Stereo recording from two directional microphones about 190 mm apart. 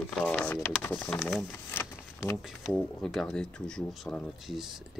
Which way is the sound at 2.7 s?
Centre (ahead or behind).